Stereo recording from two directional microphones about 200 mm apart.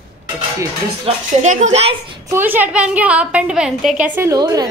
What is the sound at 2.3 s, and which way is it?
A woman's voice, 10° right (ahead or behind).